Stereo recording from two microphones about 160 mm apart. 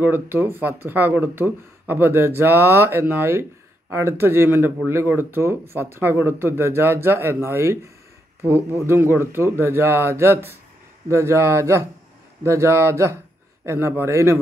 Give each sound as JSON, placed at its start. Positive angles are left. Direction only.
{"t": 0.0, "sound": "speech", "side_deg": -10}